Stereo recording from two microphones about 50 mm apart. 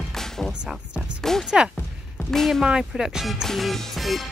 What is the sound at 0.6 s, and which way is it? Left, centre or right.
Speech, centre.